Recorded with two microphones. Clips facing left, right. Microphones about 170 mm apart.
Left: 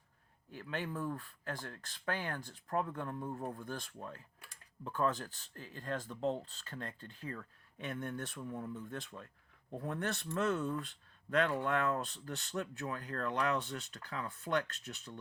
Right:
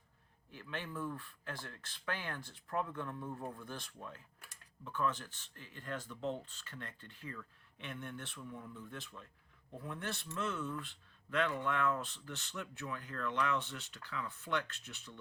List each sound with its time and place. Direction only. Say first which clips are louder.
0.5 s speech: left 4 dB; 40° left (ahead or behind)